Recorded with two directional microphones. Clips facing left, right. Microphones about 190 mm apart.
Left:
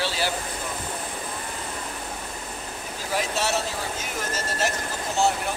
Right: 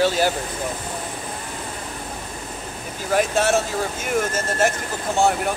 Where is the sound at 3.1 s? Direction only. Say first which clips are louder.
Right 7 dB; 50° right (ahead or behind).